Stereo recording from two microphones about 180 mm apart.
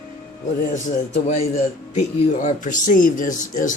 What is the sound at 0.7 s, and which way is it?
A man's voice, 40° left (ahead or behind).